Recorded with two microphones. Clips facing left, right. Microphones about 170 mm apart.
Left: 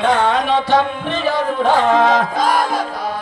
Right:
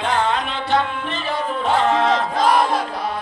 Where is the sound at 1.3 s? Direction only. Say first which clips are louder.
Left 5 dB; 90° left.